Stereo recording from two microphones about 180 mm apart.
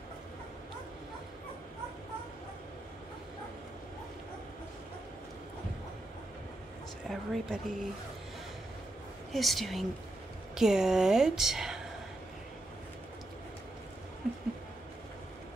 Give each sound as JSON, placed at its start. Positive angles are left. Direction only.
{"t": 7.1, "sound": "speech", "side_deg": 0}
{"t": 9.3, "sound": "speech", "side_deg": 0}